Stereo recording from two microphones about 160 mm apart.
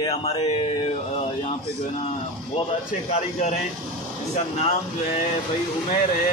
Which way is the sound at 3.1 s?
45° left (ahead or behind).